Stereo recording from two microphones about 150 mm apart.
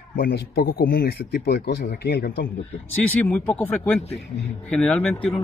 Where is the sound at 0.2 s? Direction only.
85° left.